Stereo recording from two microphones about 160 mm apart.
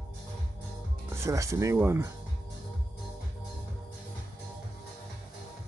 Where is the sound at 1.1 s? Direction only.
20° right (ahead or behind).